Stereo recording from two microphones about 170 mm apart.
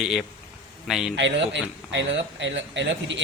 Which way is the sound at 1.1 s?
90° right.